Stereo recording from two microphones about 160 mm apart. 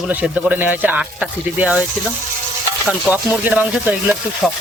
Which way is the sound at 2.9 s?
10° right (ahead or behind).